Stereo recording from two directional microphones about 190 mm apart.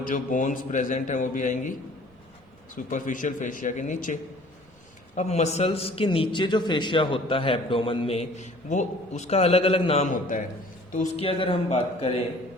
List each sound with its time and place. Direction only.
0.1 s a man's voice: 40° left (ahead or behind)
2.9 s a man's voice: 45° left (ahead or behind)